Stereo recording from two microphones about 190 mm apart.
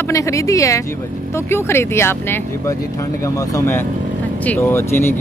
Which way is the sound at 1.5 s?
15° left (ahead or behind).